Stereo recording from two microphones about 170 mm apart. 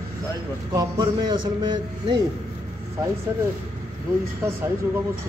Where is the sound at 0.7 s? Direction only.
25° right (ahead or behind).